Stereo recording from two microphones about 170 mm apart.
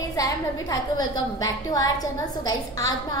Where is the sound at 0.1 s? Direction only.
20° left (ahead or behind).